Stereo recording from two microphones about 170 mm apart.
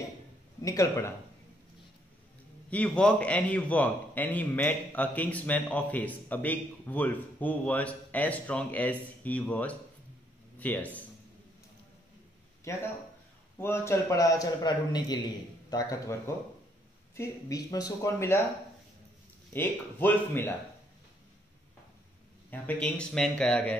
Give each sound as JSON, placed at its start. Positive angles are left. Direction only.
{"t": 0.6, "sound": "a man's voice", "side_deg": 20}
{"t": 2.7, "sound": "a man's voice", "side_deg": 5}
{"t": 12.7, "sound": "a man's voice", "side_deg": 20}
{"t": 19.5, "sound": "a man's voice", "side_deg": 10}
{"t": 22.5, "sound": "speech", "side_deg": 10}